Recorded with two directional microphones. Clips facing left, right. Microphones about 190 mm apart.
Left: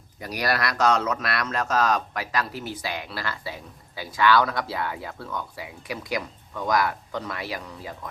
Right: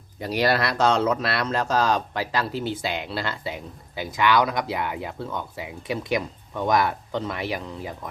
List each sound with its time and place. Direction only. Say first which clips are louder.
0.2 s speech: right 4 dB; 25° right (ahead or behind)